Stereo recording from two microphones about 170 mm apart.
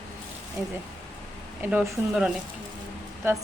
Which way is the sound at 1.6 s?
10° right (ahead or behind).